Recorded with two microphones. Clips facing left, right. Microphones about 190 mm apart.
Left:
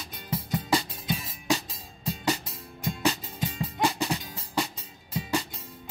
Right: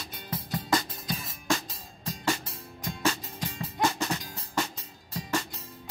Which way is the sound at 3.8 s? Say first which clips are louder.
Left 1 dB; 15° left (ahead or behind).